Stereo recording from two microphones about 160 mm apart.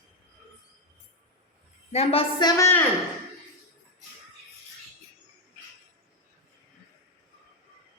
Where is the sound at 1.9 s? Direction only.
40° left (ahead or behind); by 2.8 s 20° left (ahead or behind).